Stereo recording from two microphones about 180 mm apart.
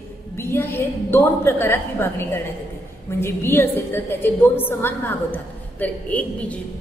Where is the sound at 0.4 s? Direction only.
15° left (ahead or behind).